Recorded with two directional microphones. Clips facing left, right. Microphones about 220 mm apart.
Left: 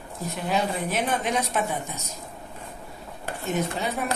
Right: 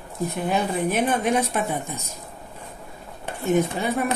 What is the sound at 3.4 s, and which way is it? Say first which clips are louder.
Speech: right 6 dB; 55° right (ahead or behind).